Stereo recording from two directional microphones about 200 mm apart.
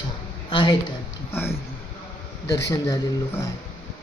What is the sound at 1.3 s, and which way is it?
A woman's voice, 10° left (ahead or behind).